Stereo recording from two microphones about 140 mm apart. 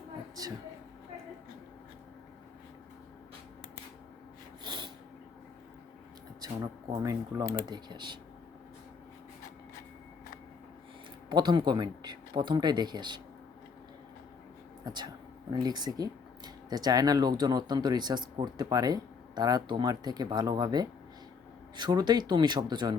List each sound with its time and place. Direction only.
4.6 s a sound: 30° right (ahead or behind)
6.9 s speech: 25° right (ahead or behind)
11.3 s speech: 30° right (ahead or behind)
14.8 s speech: 30° right (ahead or behind)